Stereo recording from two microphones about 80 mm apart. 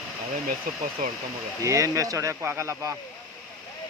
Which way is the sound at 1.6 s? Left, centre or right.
Right.